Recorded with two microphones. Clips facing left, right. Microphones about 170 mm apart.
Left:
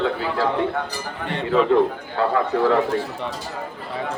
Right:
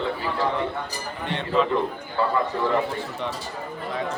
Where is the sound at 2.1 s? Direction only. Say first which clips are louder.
Left 4 dB; 85° left.